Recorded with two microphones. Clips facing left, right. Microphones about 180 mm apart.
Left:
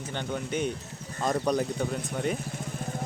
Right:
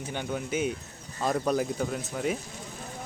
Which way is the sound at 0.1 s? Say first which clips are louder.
Even; 10° right (ahead or behind).